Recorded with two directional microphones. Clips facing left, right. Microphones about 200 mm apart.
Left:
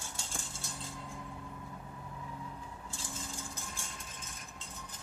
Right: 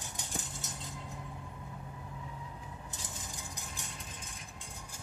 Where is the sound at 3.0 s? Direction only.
15° right (ahead or behind).